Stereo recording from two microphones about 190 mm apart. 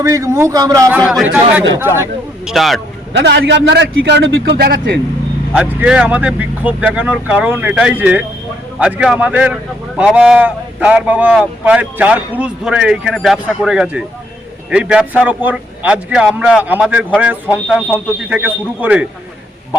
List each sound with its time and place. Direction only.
0.0 s speech: 15° right (ahead or behind)
0.9 s speech: centre (ahead or behind)
3.1 s a man's voice: 65° right (ahead or behind)
5.5 s speech: 5° right (ahead or behind)